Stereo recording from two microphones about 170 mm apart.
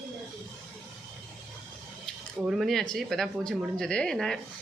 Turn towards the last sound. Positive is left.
turn(degrees=5)  # may be behind; listen again after turning